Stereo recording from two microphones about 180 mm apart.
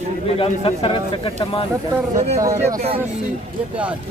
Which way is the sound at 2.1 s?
40° right (ahead or behind).